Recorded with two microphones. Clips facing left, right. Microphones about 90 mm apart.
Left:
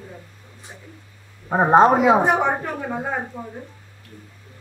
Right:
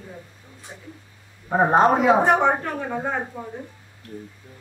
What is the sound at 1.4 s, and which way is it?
Speech, 15° left (ahead or behind).